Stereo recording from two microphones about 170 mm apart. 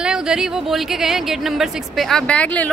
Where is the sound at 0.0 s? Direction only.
5° right (ahead or behind).